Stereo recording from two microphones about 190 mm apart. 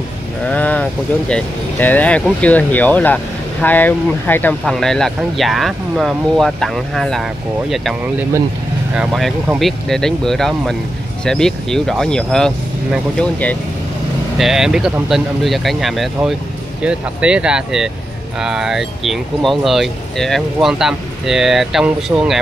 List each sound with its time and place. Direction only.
0.5 s speech: 10° left (ahead or behind)